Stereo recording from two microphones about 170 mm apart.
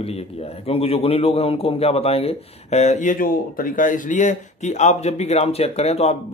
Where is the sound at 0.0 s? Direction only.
35° left (ahead or behind).